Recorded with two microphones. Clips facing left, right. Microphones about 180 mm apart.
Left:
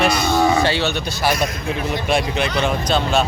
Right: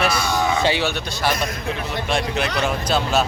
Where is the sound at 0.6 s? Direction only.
15° right (ahead or behind).